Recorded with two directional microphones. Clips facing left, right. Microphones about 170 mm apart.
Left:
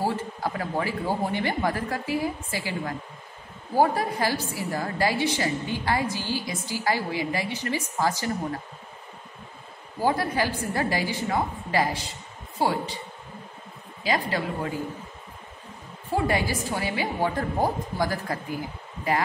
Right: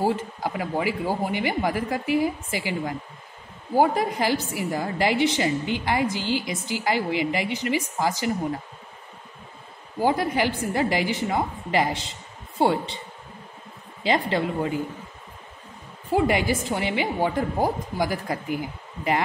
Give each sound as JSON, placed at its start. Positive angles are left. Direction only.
{"t": 0.0, "sound": "a woman's voice", "side_deg": -15}
{"t": 9.9, "sound": "a woman's voice", "side_deg": -15}
{"t": 14.0, "sound": "a woman's voice", "side_deg": -25}
{"t": 16.1, "sound": "a woman's voice", "side_deg": -20}